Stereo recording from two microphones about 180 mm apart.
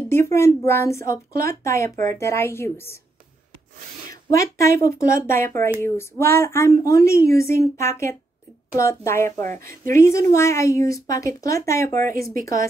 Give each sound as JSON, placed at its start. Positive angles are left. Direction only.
{"t": 0.1, "sound": "a woman's voice", "side_deg": 15}
{"t": 1.3, "sound": "speech", "side_deg": -55}
{"t": 1.6, "sound": "a woman's voice", "side_deg": 15}
{"t": 4.1, "sound": "a woman's voice", "side_deg": 15}
{"t": 7.3, "sound": "speech", "side_deg": -55}
{"t": 7.7, "sound": "a woman's voice", "side_deg": 15}
{"t": 11.9, "sound": "speech", "side_deg": -50}